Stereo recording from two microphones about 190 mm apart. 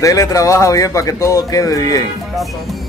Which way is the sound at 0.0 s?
15° left (ahead or behind).